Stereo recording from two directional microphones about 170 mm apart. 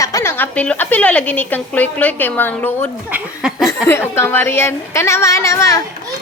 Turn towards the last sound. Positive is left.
turn(degrees=20)  # may be behind; listen again after turning